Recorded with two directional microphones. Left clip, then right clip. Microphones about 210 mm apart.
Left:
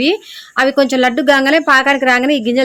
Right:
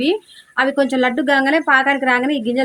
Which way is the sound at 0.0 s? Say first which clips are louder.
Left 4 dB; 45° left (ahead or behind).